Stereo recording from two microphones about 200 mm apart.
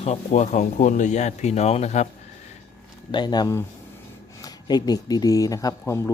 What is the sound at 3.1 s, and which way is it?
Speech, 20° left (ahead or behind).